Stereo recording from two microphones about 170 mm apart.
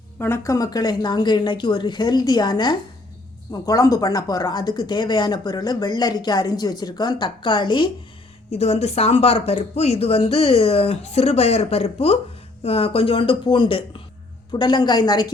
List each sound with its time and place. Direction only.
0.2 s speech: 15° left (ahead or behind)
8.4 s speech: 40° left (ahead or behind); by 15.3 s 25° left (ahead or behind)